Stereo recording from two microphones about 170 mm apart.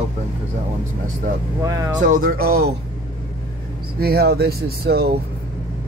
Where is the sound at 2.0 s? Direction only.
55° right (ahead or behind).